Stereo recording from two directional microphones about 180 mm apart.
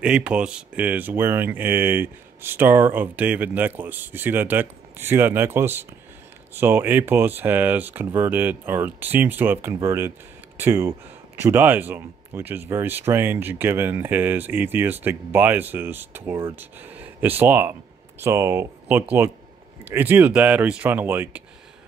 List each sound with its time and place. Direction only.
0.0 s speech: 5° right (ahead or behind)